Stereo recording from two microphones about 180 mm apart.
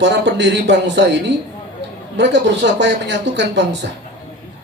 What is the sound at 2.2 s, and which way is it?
Speech, 75° right (ahead or behind).